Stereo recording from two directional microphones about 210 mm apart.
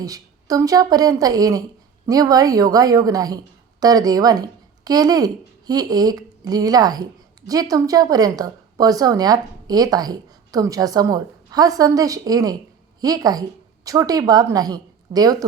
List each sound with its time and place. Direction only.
0.0 s speech: 15° right (ahead or behind)